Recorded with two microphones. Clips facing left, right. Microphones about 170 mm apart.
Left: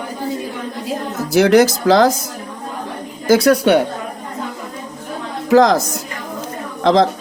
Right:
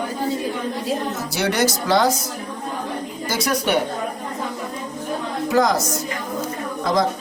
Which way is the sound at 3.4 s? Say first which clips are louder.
Left 5 dB; 65° left (ahead or behind).